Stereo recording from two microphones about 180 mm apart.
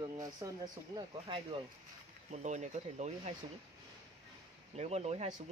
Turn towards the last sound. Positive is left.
turn(degrees=-35)  # may be behind; listen again after turning